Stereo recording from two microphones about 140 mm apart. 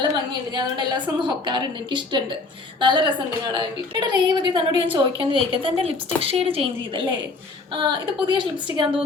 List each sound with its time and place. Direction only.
0.0 s a woman's voice: 30° right (ahead or behind)